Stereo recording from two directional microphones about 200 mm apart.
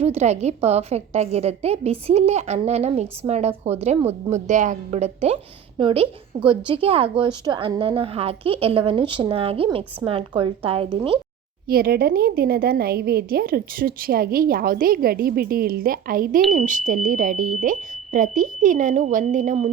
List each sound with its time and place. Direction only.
0.0 s a woman's voice: 30° right (ahead or behind)
11.7 s a woman's voice: 50° right (ahead or behind)